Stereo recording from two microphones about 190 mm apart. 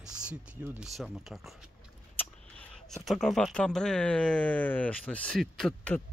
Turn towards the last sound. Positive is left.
turn(degrees=5)  # may be behind; listen again after turning